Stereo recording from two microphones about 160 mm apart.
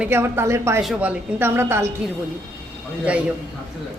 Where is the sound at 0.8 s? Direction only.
5° right (ahead or behind).